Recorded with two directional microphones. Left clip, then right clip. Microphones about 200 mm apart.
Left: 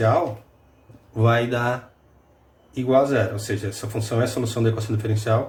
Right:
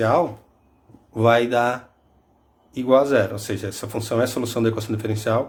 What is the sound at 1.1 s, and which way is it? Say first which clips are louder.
Speech: right 4 dB; 50° right (ahead or behind).